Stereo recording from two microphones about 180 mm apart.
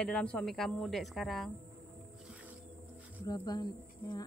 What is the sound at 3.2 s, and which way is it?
Speech, 20° left (ahead or behind).